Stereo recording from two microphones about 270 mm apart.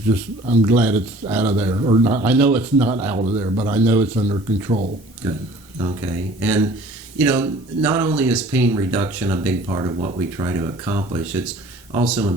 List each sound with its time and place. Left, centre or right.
0.6 s speech: centre
3.2 s speech: right